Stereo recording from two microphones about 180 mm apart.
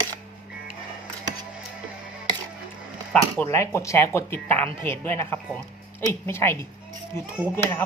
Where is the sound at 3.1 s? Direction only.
10° left (ahead or behind).